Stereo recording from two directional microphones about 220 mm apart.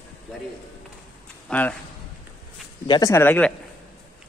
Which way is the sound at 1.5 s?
5° left (ahead or behind).